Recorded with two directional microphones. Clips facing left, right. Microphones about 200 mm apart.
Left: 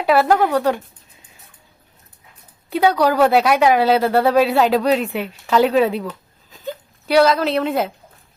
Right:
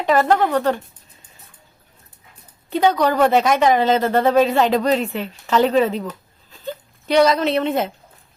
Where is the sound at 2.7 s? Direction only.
10° left (ahead or behind).